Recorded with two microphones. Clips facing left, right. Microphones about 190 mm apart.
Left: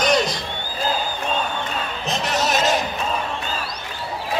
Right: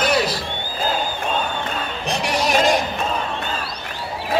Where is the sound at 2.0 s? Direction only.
10° right (ahead or behind).